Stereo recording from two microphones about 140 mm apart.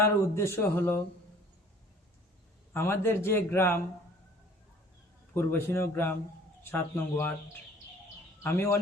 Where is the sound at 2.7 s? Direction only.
15° left (ahead or behind).